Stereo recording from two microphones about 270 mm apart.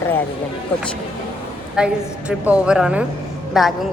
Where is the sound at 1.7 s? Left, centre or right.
Centre.